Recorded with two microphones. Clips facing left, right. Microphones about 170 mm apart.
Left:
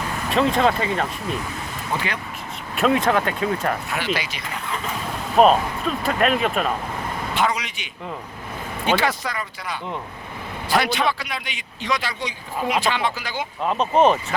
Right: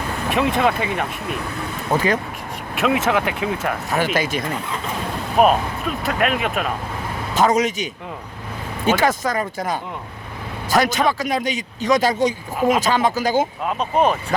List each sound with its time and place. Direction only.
0.3 s speech: 10° right (ahead or behind)
1.9 s speech: 45° right (ahead or behind)
2.7 s speech: 5° right (ahead or behind)
3.8 s speech: 45° right (ahead or behind)
5.4 s speech: 10° right (ahead or behind)
7.3 s speech: 45° right (ahead or behind)
9.0 s speech: 45° right (ahead or behind)
13.9 s speech: centre (ahead or behind)